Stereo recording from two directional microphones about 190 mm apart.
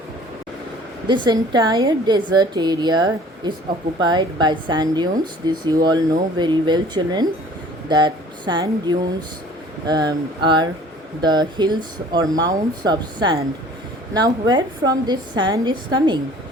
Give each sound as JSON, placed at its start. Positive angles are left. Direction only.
{"t": 1.0, "sound": "a woman's voice", "side_deg": -25}
{"t": 7.9, "sound": "a sound", "side_deg": -25}
{"t": 9.8, "sound": "a woman's voice", "side_deg": -20}